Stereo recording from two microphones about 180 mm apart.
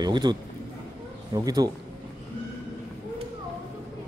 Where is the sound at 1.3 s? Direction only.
20° right (ahead or behind).